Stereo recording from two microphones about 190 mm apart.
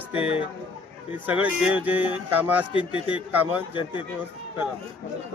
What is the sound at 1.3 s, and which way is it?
Speech, 5° right (ahead or behind).